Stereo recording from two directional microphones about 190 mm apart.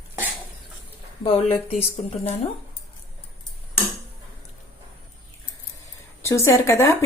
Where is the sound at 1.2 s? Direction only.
30° left (ahead or behind).